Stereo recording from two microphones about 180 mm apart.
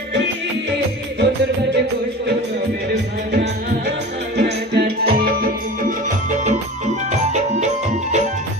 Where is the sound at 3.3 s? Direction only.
65° right (ahead or behind).